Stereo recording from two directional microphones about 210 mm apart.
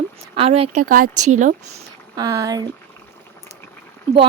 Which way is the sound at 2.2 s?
20° right (ahead or behind).